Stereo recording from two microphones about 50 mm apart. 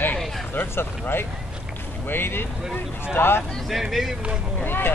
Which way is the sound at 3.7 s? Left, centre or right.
Centre.